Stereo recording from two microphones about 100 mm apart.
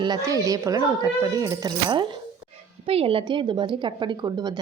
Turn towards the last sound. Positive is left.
turn(degrees=-45)  # may be behind; listen again after turning